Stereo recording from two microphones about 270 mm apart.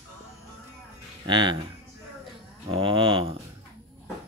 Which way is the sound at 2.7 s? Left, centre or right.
Centre.